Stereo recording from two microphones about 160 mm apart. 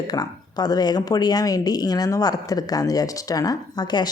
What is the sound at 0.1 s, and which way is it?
A woman's voice, 25° left (ahead or behind).